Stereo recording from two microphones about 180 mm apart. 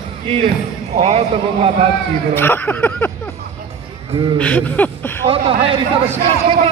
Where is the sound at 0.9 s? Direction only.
35° right (ahead or behind).